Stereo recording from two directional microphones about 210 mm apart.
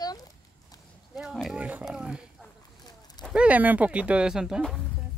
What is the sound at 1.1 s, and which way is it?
Speech, centre (ahead or behind).